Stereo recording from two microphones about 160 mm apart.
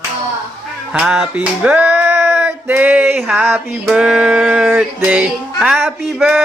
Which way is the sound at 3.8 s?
5° right (ahead or behind).